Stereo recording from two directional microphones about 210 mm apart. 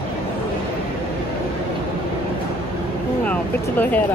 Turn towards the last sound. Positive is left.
turn(degrees=10)  # may be behind; listen again after turning